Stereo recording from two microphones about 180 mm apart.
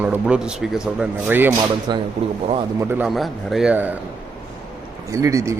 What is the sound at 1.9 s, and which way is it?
Speech, 25° right (ahead or behind).